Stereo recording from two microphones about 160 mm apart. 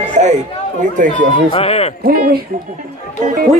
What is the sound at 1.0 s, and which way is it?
Speech, 55° right (ahead or behind).